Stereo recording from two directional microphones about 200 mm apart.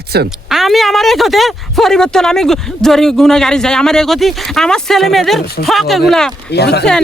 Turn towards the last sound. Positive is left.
turn(degrees=55)  # may be behind; listen again after turning